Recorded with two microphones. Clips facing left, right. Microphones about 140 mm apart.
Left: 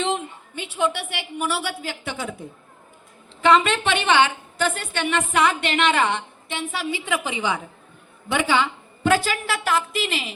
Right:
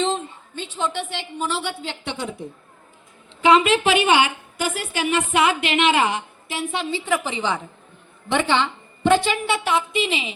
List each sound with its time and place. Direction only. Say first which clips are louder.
0.0 s a woman's voice: right 1 dB; 15° left (ahead or behind)
3.4 s a woman's voice: right 2 dB; 5° right (ahead or behind)
6.9 s a woman's voice: right 3 dB; 15° left (ahead or behind); by 10.3 s centre (ahead or behind)